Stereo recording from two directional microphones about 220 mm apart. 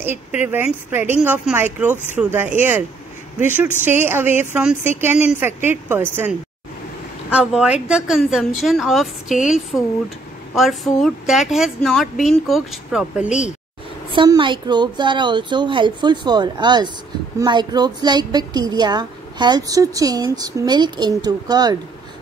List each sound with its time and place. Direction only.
0.4 s speech: 10° right (ahead or behind)
7.3 s speech: 5° right (ahead or behind)
14.1 s a woman's voice: 20° right (ahead or behind)